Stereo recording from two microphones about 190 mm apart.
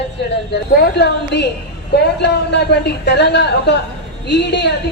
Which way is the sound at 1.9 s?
60° left (ahead or behind).